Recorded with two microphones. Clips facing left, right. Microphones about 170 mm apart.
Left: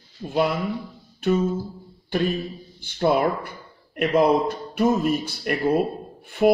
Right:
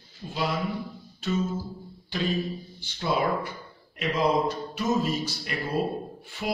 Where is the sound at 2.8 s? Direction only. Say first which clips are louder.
Left 7 dB; 55° left (ahead or behind).